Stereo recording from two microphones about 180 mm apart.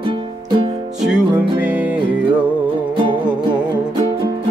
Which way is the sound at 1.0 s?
5° right (ahead or behind).